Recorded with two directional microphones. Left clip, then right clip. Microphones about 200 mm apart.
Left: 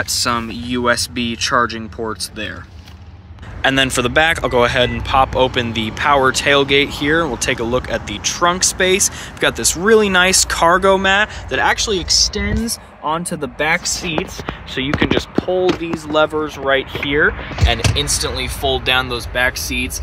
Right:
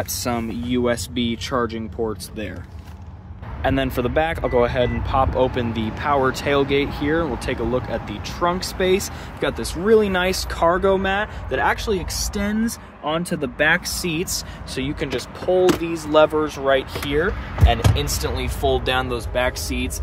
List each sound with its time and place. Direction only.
0.0 s speech: 5° right (ahead or behind)
3.6 s speech: centre (ahead or behind)
13.0 s speech: 25° left (ahead or behind)
14.8 s speech: 5° right (ahead or behind)
16.1 s speech: 10° left (ahead or behind)
17.9 s speech: 5° right (ahead or behind)